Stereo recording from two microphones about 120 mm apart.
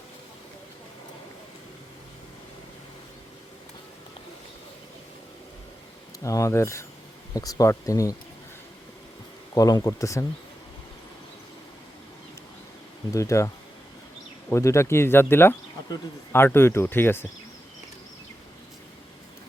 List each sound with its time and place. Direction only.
6.1 s speech: 30° left (ahead or behind)
9.6 s speech: 30° left (ahead or behind)
13.1 s speech: 25° left (ahead or behind)
14.5 s speech: 25° left (ahead or behind)